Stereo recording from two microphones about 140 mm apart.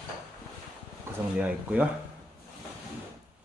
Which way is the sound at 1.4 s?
10° right (ahead or behind).